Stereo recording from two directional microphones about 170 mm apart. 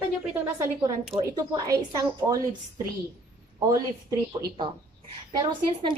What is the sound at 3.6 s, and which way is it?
Speech, 20° right (ahead or behind).